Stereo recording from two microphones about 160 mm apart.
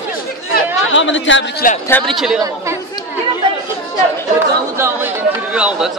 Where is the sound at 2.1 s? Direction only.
Centre (ahead or behind).